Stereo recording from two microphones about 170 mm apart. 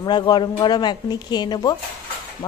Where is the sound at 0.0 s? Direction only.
25° left (ahead or behind).